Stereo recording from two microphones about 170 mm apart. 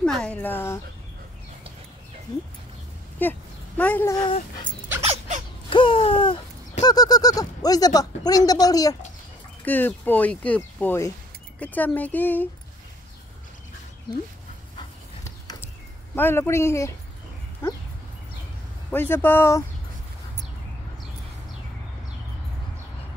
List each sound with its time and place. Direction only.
0.2 s speech: 10° left (ahead or behind)
3.2 s speech: 10° left (ahead or behind)
5.0 s a sound: 35° right (ahead or behind)
5.7 s a sound: 30° left (ahead or behind)
6.8 s speech: 20° left (ahead or behind)
16.2 s speech: 15° left (ahead or behind)
18.9 s speech: 10° left (ahead or behind)